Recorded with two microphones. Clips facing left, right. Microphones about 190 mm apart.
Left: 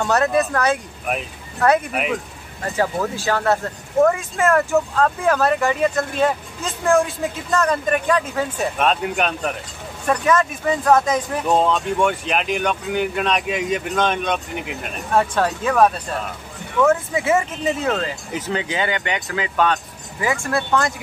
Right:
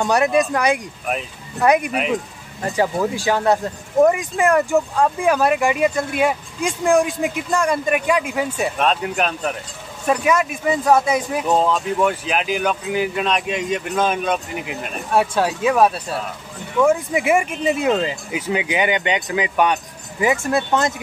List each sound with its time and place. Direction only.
0.0 s speech: 15° right (ahead or behind)
8.7 s speech: centre (ahead or behind)
10.0 s speech: 10° right (ahead or behind)